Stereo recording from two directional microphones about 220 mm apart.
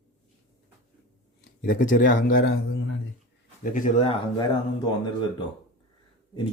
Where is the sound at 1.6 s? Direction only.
35° left (ahead or behind).